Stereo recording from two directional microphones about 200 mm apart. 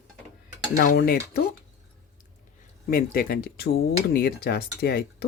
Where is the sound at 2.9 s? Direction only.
45° left (ahead or behind).